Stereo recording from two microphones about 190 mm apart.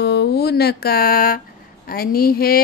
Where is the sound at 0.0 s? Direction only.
60° left (ahead or behind).